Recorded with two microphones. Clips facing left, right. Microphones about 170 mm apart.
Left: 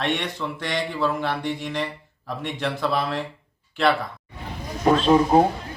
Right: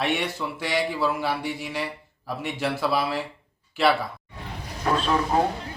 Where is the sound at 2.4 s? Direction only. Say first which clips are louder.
Even; 5° right (ahead or behind).